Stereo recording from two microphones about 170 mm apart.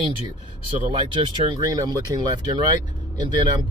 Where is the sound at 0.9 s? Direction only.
30° right (ahead or behind).